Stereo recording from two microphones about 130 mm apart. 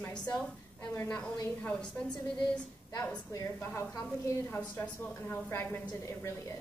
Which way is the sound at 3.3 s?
20° left (ahead or behind).